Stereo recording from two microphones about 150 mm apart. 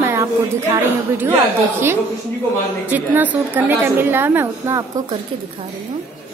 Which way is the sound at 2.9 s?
10° right (ahead or behind).